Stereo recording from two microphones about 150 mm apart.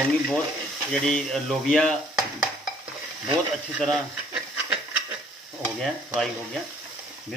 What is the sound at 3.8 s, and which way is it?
Speech, centre (ahead or behind).